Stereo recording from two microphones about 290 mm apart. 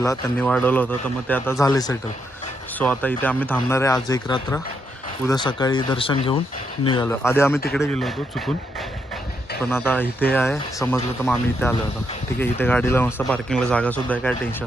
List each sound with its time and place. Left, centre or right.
0.0 s speech: centre
9.6 s speech: centre